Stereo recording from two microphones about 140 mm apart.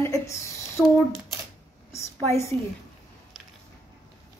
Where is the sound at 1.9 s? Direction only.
20° left (ahead or behind).